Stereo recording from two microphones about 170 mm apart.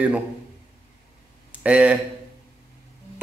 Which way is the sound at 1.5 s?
5° right (ahead or behind).